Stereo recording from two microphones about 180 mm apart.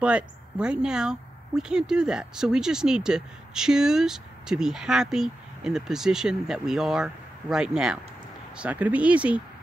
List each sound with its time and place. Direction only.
0.0 s a woman's voice: 5° right (ahead or behind)